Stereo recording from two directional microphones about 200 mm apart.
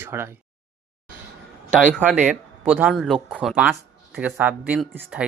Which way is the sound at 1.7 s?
5° right (ahead or behind).